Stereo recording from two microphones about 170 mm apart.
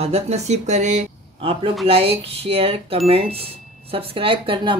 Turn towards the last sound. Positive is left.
turn(degrees=-30)  # may be behind; listen again after turning